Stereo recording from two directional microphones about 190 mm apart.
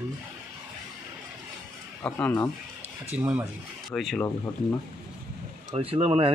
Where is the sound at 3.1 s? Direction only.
5° right (ahead or behind).